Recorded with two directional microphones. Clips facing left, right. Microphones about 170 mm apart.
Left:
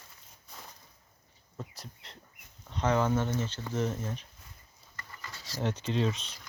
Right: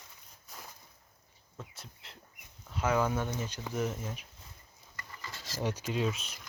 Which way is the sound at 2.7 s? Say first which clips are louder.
Left 2 dB; 10° right (ahead or behind).